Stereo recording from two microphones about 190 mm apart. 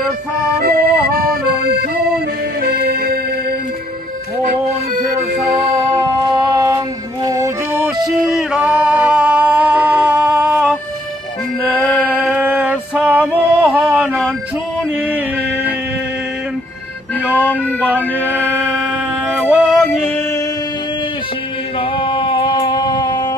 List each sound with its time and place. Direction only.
0.6 s accordion: 50° right (ahead or behind)
7.2 s music: 15° right (ahead or behind)
8.3 s singing: centre (ahead or behind)
12.0 s music: 5° right (ahead or behind)
17.8 s music: 10° right (ahead or behind)
21.9 s music: 25° left (ahead or behind)